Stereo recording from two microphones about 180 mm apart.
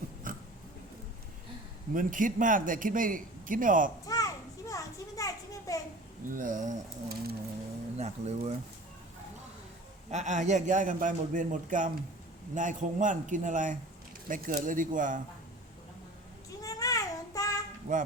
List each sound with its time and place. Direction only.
0.3 s dog: 50° right (ahead or behind)
1.9 s a man's voice: 50° right (ahead or behind)
4.0 s children playing: 20° left (ahead or behind)
4.7 s a sound: 20° left (ahead or behind)
6.2 s a man's voice: 45° right (ahead or behind)
7.9 s speech: 35° right (ahead or behind)
10.1 s a man's voice: 40° right (ahead or behind)
16.6 s child singing: 20° left (ahead or behind)
17.9 s a man's voice: 45° right (ahead or behind)